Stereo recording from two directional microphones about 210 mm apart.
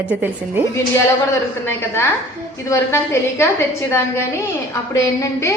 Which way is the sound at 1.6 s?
10° left (ahead or behind).